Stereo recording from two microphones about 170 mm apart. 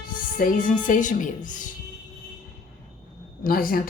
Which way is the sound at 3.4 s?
55° left (ahead or behind).